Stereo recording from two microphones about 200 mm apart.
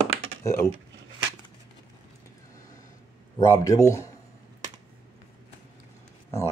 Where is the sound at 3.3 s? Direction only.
15° left (ahead or behind).